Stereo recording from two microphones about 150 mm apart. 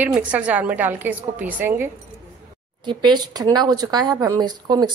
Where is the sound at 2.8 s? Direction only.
30° right (ahead or behind).